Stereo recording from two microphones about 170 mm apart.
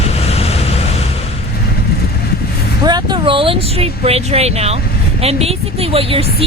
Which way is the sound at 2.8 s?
25° right (ahead or behind).